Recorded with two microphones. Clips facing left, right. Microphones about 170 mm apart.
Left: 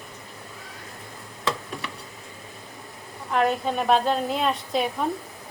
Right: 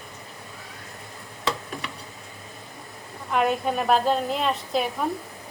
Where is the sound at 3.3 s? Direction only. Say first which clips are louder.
Even; 5° right (ahead or behind).